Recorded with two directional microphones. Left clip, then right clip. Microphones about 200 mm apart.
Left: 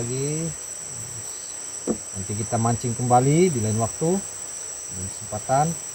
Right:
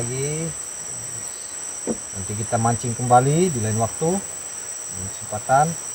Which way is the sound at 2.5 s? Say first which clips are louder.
Right 3 dB; 15° right (ahead or behind).